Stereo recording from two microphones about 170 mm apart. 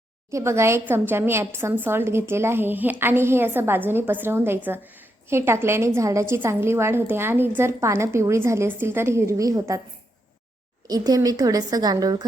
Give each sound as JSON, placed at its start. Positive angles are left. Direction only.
{"t": 0.3, "sound": "a woman's voice", "side_deg": -15}
{"t": 10.8, "sound": "a woman's voice", "side_deg": -20}